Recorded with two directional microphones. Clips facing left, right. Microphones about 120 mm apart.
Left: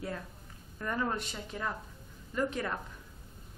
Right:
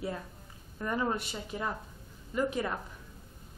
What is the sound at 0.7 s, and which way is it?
A woman's voice, 15° right (ahead or behind).